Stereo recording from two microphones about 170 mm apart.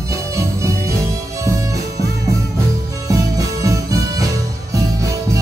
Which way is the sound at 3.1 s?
20° right (ahead or behind).